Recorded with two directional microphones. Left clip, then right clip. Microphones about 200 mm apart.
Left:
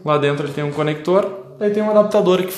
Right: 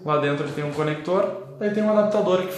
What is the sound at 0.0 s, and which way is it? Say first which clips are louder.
Speech: left 5 dB; 50° left (ahead or behind).